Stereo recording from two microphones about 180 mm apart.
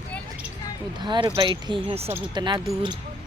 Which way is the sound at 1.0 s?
25° right (ahead or behind).